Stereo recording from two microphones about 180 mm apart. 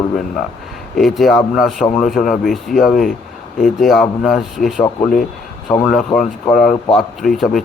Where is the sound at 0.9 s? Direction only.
Centre (ahead or behind).